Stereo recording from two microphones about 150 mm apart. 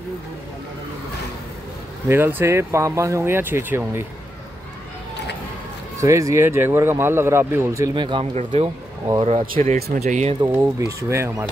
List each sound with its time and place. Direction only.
2.0 s speech: 15° right (ahead or behind)
5.9 s speech: 20° right (ahead or behind)
7.9 s speech: 35° right (ahead or behind)
8.4 s speech: 50° right (ahead or behind)
10.5 s speech: 20° right (ahead or behind)